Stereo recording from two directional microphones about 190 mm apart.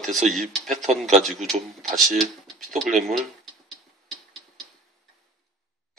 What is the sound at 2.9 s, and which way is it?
Speech, 45° right (ahead or behind).